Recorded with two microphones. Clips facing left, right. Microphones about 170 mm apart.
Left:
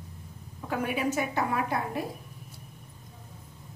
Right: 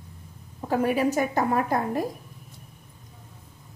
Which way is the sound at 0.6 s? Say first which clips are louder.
Right 6 dB; 35° right (ahead or behind).